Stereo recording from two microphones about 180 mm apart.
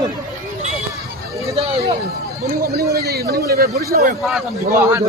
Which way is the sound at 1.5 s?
30° right (ahead or behind).